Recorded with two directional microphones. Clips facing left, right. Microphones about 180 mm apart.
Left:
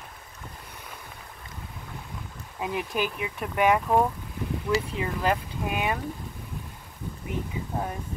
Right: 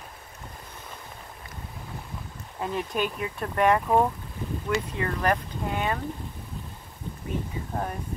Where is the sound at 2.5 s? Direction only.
10° left (ahead or behind).